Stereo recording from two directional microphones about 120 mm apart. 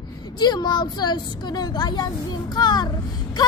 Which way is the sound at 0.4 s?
35° left (ahead or behind).